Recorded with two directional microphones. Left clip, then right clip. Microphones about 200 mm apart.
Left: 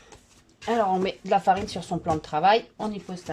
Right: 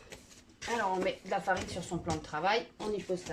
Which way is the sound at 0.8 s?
50° left (ahead or behind).